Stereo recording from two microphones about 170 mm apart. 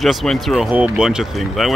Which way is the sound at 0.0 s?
Centre (ahead or behind).